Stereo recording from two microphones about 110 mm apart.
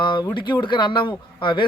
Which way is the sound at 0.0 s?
45° left (ahead or behind).